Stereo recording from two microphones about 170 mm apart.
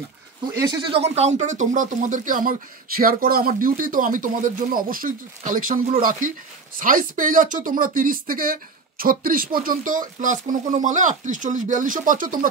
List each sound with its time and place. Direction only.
0.6 s speech: 25° right (ahead or behind); by 12.4 s 55° right (ahead or behind)